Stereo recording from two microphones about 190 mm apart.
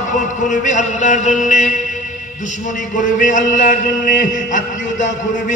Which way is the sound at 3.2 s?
45° left (ahead or behind).